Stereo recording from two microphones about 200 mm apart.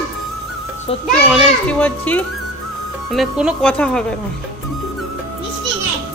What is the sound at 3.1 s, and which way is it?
Speech, centre (ahead or behind).